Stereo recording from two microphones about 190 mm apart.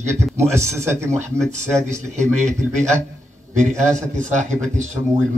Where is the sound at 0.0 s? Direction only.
15° right (ahead or behind).